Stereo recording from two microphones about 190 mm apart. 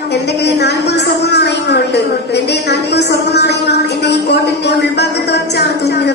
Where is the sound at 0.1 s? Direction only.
60° left (ahead or behind).